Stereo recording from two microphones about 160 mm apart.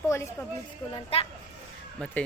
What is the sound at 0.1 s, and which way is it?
Speech, 15° left (ahead or behind).